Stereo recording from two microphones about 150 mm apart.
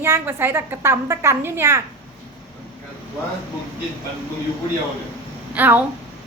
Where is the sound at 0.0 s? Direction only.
15° right (ahead or behind).